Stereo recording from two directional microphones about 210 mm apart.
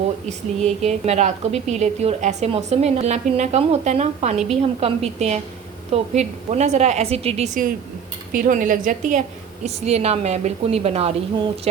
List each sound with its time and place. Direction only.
0.3 s a woman's voice: 30° right (ahead or behind)